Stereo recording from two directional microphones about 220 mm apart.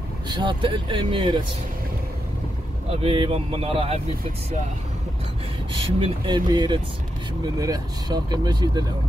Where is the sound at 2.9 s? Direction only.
25° right (ahead or behind).